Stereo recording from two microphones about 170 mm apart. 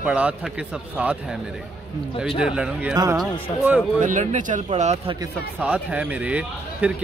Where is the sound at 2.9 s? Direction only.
20° right (ahead or behind).